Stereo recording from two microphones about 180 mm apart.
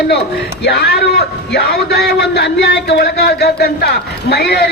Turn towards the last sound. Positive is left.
turn(degrees=65)  # may be behind; listen again after turning